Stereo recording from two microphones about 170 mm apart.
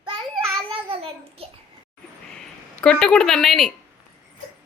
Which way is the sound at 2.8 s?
5° left (ahead or behind).